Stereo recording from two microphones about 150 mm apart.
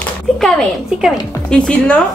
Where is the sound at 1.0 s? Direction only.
5° left (ahead or behind).